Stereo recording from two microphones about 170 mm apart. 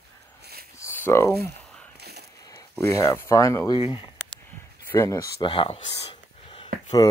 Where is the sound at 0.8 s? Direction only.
15° left (ahead or behind).